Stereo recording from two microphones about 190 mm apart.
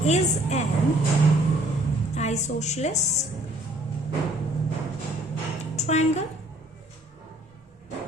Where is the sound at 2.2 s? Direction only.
35° left (ahead or behind).